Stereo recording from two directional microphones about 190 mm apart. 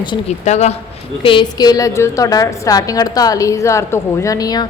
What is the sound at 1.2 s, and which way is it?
A woman's voice, 25° left (ahead or behind).